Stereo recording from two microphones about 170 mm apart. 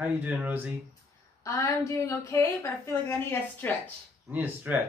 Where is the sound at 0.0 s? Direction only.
10° right (ahead or behind).